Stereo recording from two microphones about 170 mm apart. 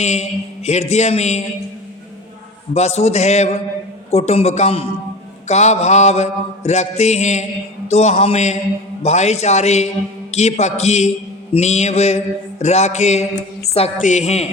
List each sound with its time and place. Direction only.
0.0 s mantra: 40° left (ahead or behind)
2.7 s mantra: 40° left (ahead or behind)